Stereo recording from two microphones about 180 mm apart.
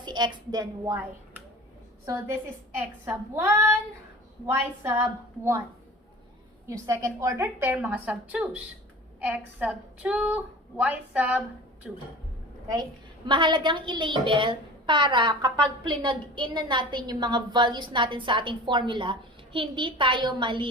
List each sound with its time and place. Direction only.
0.0 s a woman's voice: 25° right (ahead or behind)
2.7 s a woman's voice: 15° right (ahead or behind)
6.7 s a woman's voice: 20° right (ahead or behind); by 12.0 s centre (ahead or behind)
13.2 s a woman's voice: 25° right (ahead or behind)